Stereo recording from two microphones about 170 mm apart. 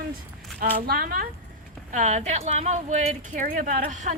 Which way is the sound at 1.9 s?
45° right (ahead or behind).